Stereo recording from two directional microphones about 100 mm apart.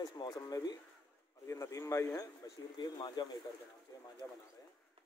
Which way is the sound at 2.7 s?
45° left (ahead or behind).